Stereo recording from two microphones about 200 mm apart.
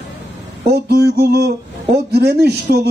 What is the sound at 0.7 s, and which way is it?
Speech, 55° right (ahead or behind).